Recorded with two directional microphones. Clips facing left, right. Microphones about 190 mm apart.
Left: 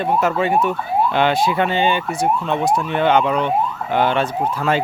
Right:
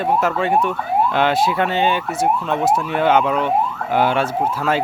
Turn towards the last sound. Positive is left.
turn(degrees=-5)  # may be behind; listen again after turning